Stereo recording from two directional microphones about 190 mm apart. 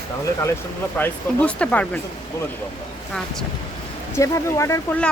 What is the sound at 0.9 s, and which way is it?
Speech, 10° left (ahead or behind).